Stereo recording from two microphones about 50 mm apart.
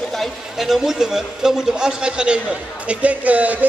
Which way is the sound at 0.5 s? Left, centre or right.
Centre.